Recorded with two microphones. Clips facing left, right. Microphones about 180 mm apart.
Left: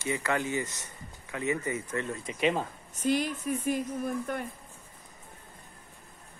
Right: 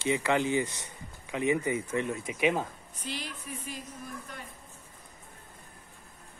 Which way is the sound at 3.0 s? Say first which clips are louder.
Left 12 dB; 50° left (ahead or behind).